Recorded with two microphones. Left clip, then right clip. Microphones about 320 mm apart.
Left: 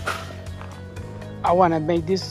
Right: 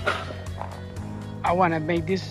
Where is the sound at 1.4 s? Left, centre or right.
Left.